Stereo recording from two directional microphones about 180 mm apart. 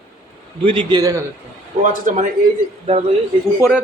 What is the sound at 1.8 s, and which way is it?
Speech, 45° right (ahead or behind).